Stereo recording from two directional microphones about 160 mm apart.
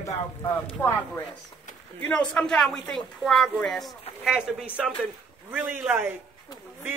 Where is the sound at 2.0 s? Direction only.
5° left (ahead or behind).